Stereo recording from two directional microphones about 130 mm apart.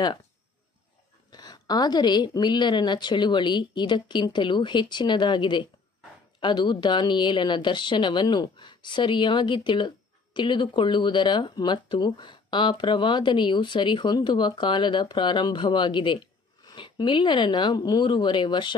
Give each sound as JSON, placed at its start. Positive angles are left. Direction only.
{"t": 1.3, "sound": "a woman's voice", "side_deg": 30}